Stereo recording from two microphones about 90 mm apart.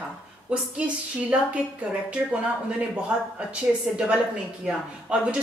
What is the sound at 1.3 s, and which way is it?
Speech, 15° right (ahead or behind).